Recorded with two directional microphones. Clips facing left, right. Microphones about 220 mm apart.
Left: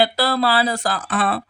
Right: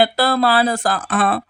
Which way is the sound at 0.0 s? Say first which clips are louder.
Right 3 dB; 50° right (ahead or behind).